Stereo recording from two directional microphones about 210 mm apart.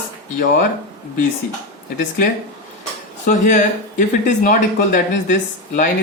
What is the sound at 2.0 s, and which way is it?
Speech, 40° left (ahead or behind).